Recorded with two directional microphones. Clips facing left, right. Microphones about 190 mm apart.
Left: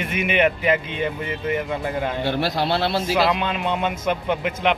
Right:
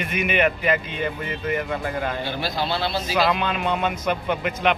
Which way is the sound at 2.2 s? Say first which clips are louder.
Left 4 dB; 70° left (ahead or behind).